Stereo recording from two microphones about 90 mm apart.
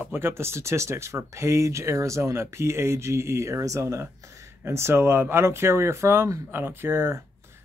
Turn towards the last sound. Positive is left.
turn(degrees=-25)  # may be behind; listen again after turning